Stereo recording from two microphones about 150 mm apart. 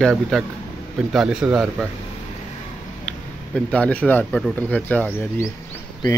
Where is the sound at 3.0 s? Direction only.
10° left (ahead or behind).